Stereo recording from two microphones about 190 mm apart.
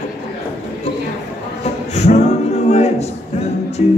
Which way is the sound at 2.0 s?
35° left (ahead or behind).